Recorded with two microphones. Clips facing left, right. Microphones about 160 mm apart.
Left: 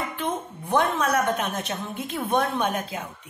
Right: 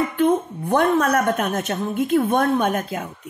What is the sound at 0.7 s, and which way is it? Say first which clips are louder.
A woman's voice: right 5 dB; 50° right (ahead or behind).